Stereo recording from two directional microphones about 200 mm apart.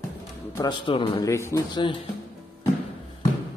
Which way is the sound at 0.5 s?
25° left (ahead or behind).